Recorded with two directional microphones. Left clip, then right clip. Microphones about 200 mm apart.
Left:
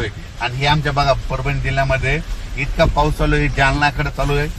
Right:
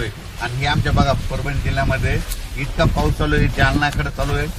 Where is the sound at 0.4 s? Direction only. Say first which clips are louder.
Left 4 dB; 30° left (ahead or behind).